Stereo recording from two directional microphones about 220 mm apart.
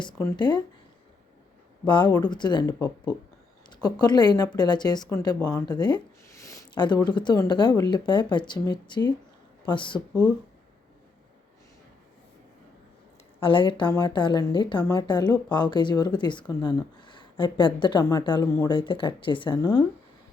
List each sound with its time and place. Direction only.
0.0 s speech: 15° left (ahead or behind)
1.9 s speech: 20° left (ahead or behind)
13.4 s speech: 25° left (ahead or behind)